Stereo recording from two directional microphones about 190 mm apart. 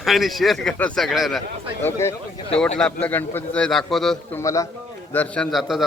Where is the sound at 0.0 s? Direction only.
Centre (ahead or behind).